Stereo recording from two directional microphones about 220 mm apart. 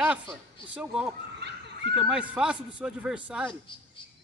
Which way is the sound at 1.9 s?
5° right (ahead or behind).